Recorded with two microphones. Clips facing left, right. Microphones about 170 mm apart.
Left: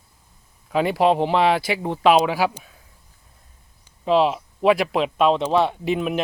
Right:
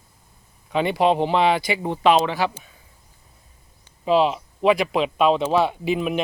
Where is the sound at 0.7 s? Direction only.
Centre (ahead or behind).